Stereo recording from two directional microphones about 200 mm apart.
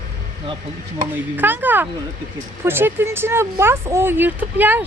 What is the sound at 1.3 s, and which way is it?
Speech, 10° right (ahead or behind).